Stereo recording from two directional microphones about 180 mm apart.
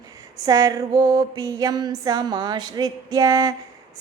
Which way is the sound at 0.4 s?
20° right (ahead or behind).